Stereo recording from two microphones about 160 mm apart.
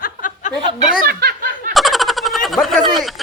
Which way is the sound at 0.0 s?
55° left (ahead or behind).